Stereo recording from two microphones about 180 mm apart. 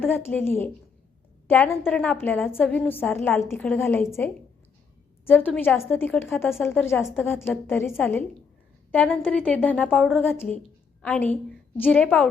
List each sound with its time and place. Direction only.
0.0 s a woman's voice: 10° left (ahead or behind)
7.2 s a woman's voice: 15° left (ahead or behind)
7.5 s a woman's voice: centre (ahead or behind)